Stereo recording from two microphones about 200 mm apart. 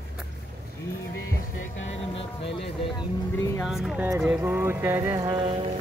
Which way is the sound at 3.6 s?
Centre (ahead or behind).